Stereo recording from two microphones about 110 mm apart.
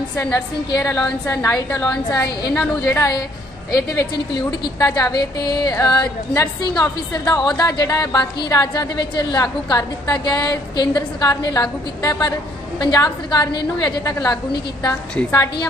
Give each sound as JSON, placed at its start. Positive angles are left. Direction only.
{"t": 0.3, "sound": "a woman's voice", "side_deg": 35}
{"t": 1.8, "sound": "a woman's voice", "side_deg": 35}
{"t": 3.7, "sound": "a woman's voice", "side_deg": 35}